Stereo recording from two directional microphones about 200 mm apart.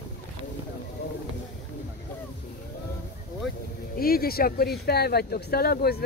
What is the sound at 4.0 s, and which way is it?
Speech, 50° left (ahead or behind).